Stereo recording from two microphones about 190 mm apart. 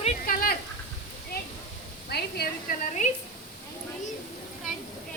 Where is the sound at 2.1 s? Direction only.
55° left (ahead or behind).